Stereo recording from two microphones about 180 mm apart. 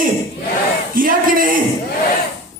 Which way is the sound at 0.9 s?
50° right (ahead or behind).